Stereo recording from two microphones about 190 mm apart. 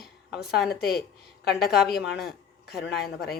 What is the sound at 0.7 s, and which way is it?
Speech, 55° left (ahead or behind).